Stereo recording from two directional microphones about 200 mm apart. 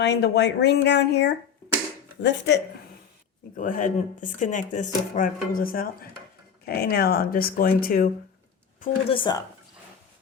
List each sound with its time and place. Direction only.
0.0 s speech: 60° left (ahead or behind)
3.5 s speech: 40° left (ahead or behind)
8.8 s a woman's voice: 25° left (ahead or behind)